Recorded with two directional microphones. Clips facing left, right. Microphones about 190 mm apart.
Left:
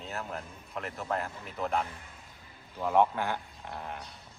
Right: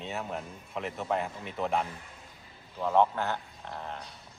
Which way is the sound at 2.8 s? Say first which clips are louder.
Even; 10° left (ahead or behind).